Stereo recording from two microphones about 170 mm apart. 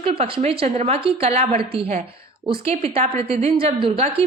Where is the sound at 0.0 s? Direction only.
35° right (ahead or behind).